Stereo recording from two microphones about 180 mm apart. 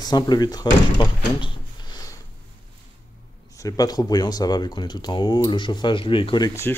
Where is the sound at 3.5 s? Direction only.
20° left (ahead or behind).